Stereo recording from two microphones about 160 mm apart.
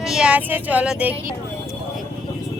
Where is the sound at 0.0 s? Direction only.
5° right (ahead or behind).